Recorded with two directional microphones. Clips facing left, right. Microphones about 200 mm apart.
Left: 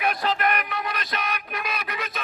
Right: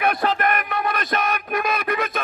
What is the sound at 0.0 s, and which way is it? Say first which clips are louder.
Music: right 3 dB; 55° right (ahead or behind).